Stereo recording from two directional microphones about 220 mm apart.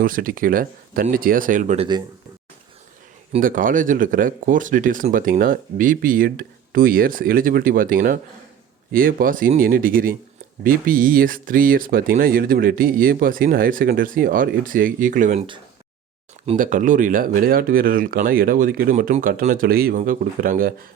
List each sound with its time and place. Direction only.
0.0 s speech: 40° right (ahead or behind)
3.3 s speech: 40° right (ahead or behind)
16.5 s speech: 35° right (ahead or behind)